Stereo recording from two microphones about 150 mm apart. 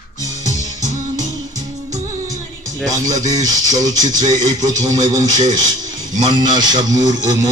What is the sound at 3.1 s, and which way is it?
A man's voice, 25° right (ahead or behind).